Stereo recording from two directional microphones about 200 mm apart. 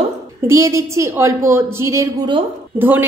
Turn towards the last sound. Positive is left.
turn(degrees=-10)  # may be behind; listen again after turning